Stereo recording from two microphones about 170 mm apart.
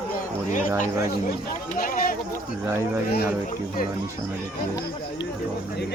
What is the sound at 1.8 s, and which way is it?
Speech, 55° left (ahead or behind).